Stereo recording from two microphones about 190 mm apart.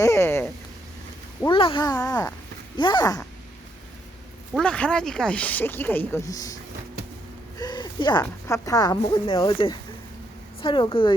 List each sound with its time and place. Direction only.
0.0 s speech: 15° left (ahead or behind)
1.5 s speech: 25° left (ahead or behind)
4.5 s speech: 5° left (ahead or behind)
7.6 s a sound: 25° left (ahead or behind)
8.2 s speech: 15° left (ahead or behind)